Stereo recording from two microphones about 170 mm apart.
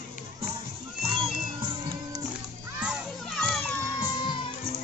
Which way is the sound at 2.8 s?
5° right (ahead or behind).